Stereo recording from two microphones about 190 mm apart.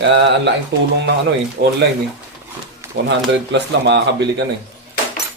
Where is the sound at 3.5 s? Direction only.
65° right (ahead or behind).